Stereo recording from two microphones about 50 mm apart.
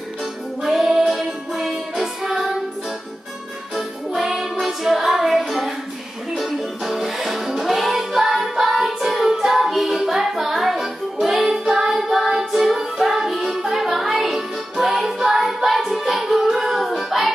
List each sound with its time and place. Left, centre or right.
0.6 s music: centre
3.7 s music: centre
16.1 s child singing: centre